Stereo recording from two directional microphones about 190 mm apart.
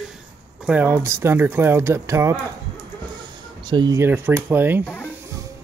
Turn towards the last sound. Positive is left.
turn(degrees=10)  # may be behind; listen again after turning